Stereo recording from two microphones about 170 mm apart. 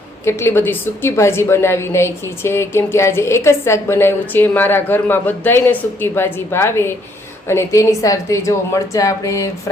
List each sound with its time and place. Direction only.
0.3 s a woman's voice: 15° left (ahead or behind)